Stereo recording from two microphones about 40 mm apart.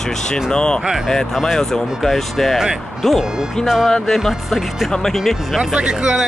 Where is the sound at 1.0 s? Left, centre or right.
Centre.